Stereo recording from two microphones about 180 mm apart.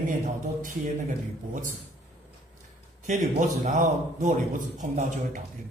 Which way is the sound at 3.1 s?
45° right (ahead or behind).